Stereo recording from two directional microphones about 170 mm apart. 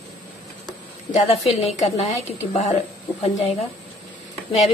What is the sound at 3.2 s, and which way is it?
Speech, 35° left (ahead or behind).